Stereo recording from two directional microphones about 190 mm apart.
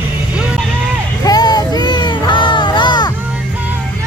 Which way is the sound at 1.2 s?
20° left (ahead or behind).